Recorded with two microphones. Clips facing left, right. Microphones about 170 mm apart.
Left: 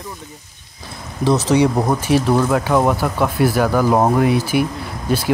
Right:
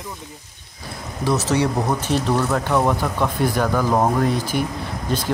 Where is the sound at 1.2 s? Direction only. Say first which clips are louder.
Left 5 dB; 15° left (ahead or behind).